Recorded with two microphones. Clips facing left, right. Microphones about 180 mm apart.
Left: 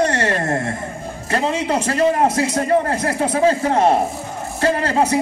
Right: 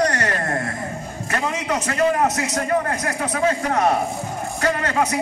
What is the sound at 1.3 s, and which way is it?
A man's voice, 30° left (ahead or behind).